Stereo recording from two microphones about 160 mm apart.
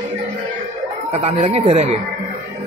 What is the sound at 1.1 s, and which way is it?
Speech, 40° right (ahead or behind).